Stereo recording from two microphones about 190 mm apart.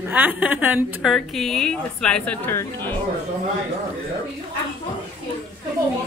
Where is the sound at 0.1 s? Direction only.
10° right (ahead or behind); by 3.0 s 10° left (ahead or behind).